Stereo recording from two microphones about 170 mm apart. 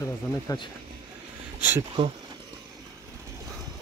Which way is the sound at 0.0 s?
20° left (ahead or behind).